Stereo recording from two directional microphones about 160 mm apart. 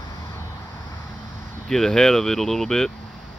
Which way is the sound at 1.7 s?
5° left (ahead or behind).